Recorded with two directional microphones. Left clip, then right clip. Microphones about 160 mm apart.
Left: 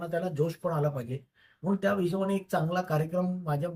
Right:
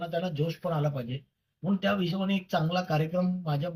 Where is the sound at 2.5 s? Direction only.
10° left (ahead or behind).